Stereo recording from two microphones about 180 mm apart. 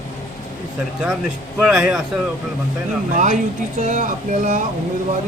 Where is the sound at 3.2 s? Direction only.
40° right (ahead or behind).